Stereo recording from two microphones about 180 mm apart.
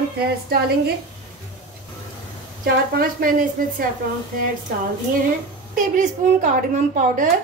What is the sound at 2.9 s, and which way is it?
Speech, 55° right (ahead or behind).